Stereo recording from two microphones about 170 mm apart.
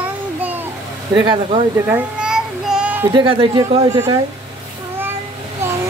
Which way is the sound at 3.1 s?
30° right (ahead or behind).